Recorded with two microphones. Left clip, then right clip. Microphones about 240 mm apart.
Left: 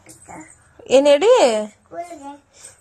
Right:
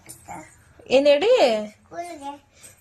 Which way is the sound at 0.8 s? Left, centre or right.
Centre.